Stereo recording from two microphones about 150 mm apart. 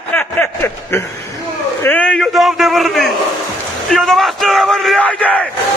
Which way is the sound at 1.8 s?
10° left (ahead or behind).